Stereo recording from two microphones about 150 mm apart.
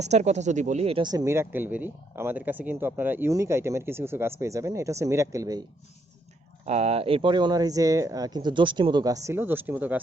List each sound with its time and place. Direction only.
0.0 s speech: 50° right (ahead or behind)
1.0 s speech: 20° right (ahead or behind)
6.7 s speech: 45° right (ahead or behind); by 10.0 s 10° right (ahead or behind)